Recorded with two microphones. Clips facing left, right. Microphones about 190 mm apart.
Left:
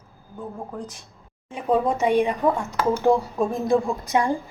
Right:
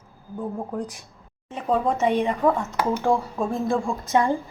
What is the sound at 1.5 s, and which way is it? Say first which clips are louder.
A woman's voice: left 1 dB; 15° left (ahead or behind).